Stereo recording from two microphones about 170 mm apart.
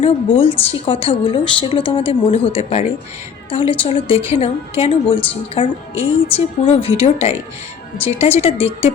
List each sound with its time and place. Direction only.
0.0 s a woman's voice: 35° left (ahead or behind)